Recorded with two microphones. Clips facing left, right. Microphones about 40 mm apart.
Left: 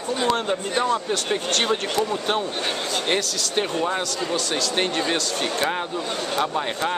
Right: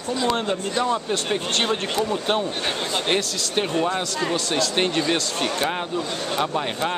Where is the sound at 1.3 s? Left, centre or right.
Centre.